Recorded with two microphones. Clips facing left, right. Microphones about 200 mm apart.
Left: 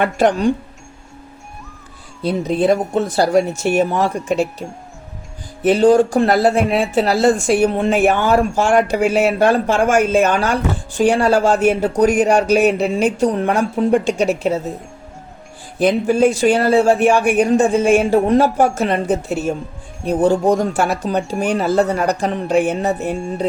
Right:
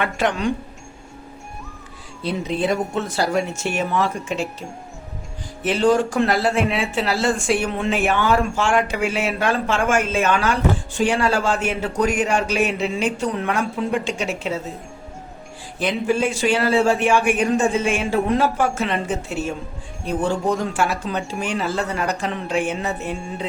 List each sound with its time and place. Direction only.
0.0 s speech: 40° left (ahead or behind)
2.2 s speech: 40° left (ahead or behind)
5.6 s speech: 40° left (ahead or behind)
15.8 s speech: 40° left (ahead or behind)
23.1 s music: centre (ahead or behind)